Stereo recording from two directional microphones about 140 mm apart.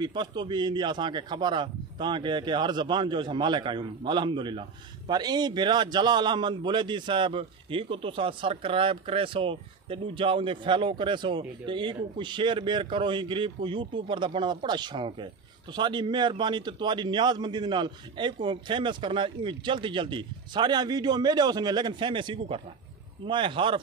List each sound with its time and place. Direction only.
0.0 s a man's voice: 30° right (ahead or behind)